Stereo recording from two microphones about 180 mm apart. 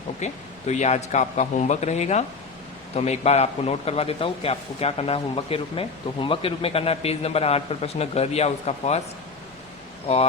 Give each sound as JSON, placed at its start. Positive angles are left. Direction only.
{"t": 0.2, "sound": "a man's voice", "side_deg": 40}
{"t": 10.1, "sound": "a man's voice", "side_deg": 35}